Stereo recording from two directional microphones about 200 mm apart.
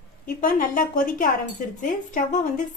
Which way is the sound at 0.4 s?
45° left (ahead or behind).